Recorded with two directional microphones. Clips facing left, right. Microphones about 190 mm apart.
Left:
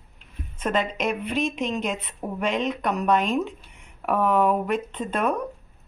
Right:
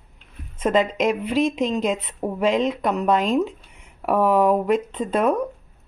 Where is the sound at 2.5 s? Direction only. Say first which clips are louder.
Right 4 dB; 30° right (ahead or behind).